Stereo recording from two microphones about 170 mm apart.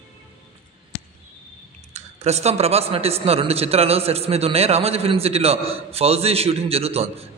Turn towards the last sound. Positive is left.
turn(degrees=-35)  # may be behind; listen again after turning